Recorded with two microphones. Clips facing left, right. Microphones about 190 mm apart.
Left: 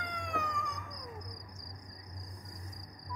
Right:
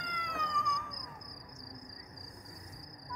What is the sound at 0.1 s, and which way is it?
Cat, 50° left (ahead or behind).